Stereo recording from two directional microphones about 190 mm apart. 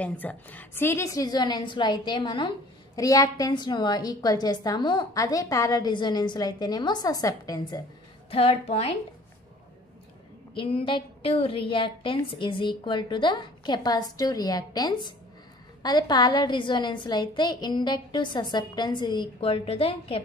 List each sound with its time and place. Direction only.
0.0 s a woman's voice: 10° left (ahead or behind)
8.3 s a woman's voice: 30° left (ahead or behind)
10.5 s a woman's voice: 30° left (ahead or behind)